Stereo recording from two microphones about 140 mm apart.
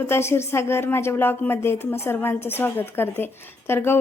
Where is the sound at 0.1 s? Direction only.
20° left (ahead or behind).